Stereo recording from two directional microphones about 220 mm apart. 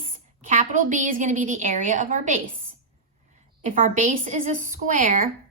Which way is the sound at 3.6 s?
35° right (ahead or behind).